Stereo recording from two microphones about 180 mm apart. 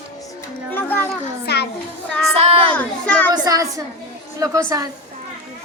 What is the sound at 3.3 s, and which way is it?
A woman's voice, 20° right (ahead or behind).